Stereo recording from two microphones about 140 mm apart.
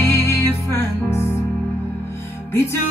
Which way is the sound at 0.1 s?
15° left (ahead or behind).